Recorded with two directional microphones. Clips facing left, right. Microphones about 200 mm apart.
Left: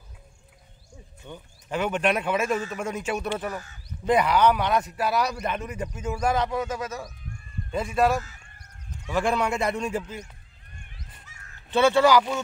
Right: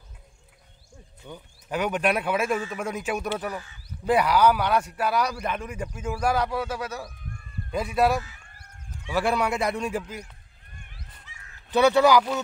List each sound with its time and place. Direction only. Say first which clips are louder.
1.2 s a man's voice: even; 10° right (ahead or behind)
4.9 s a man's voice: even; 5° left (ahead or behind)
11.3 s crow: right 1 dB; 45° left (ahead or behind)
11.7 s a man's voice: right 1 dB; 15° right (ahead or behind)
12.2 s a man's voice: even; 5° right (ahead or behind)